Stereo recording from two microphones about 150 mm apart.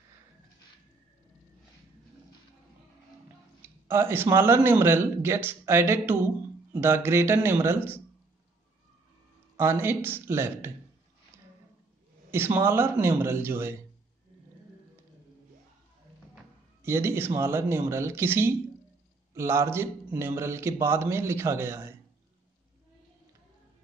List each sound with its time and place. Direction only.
3.6 s speech: 15° right (ahead or behind)
9.6 s speech: 15° right (ahead or behind)
12.3 s speech: 15° right (ahead or behind)
16.8 s speech: 15° right (ahead or behind)